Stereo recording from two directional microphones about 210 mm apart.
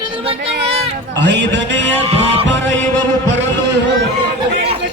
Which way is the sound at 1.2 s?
55° right (ahead or behind).